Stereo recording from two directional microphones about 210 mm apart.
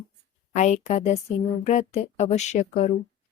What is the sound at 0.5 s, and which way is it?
A woman's voice, 35° left (ahead or behind).